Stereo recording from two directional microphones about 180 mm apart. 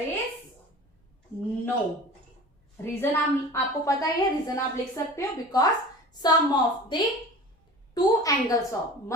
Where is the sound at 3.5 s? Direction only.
20° left (ahead or behind).